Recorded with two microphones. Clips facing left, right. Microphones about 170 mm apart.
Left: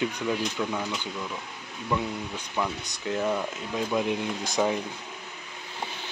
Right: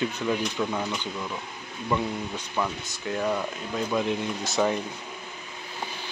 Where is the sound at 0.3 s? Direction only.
10° right (ahead or behind).